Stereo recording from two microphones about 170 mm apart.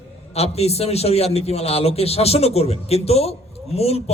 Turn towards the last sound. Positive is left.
turn(degrees=35)  # may be behind; listen again after turning